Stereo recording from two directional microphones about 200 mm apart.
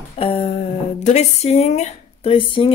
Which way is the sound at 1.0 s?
35° left (ahead or behind).